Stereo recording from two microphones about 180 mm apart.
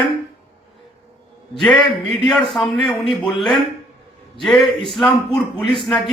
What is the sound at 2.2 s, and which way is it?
A man's voice, centre (ahead or behind).